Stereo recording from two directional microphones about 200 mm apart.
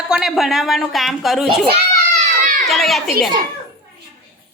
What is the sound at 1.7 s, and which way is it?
Children playing, 35° right (ahead or behind).